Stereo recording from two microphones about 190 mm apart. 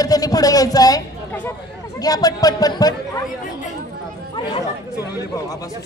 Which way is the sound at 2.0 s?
20° left (ahead or behind).